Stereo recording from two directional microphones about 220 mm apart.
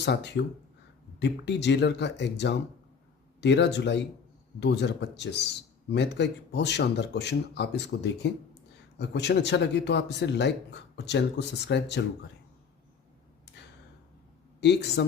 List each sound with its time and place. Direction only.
0.0 s speech: 50° left (ahead or behind)
14.6 s speech: 50° left (ahead or behind)